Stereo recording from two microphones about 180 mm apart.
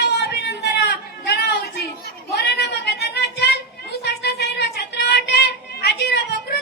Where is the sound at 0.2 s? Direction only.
70° left (ahead or behind).